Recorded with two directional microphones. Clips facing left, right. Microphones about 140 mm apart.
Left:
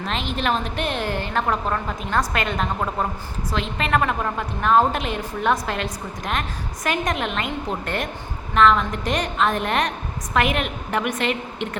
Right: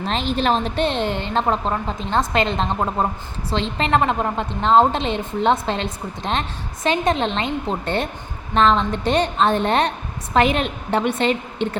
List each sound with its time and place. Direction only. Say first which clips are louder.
0.0 s a woman's voice: right 4 dB; 35° right (ahead or behind)